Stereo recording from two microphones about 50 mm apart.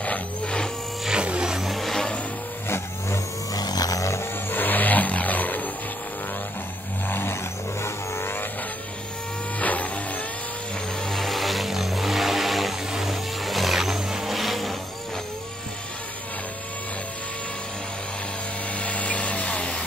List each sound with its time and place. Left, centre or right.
0.0 s music: left
1.0 s vehicle: right
1.6 s vehicle: centre
4.0 s a sound: left
4.5 s vehicle: left
7.1 s vehicle: left
9.6 s music: left
11.1 s vehicle: centre
18.8 s a sound: left